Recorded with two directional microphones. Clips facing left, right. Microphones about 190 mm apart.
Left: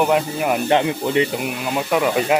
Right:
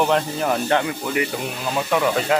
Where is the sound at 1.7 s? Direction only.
15° left (ahead or behind).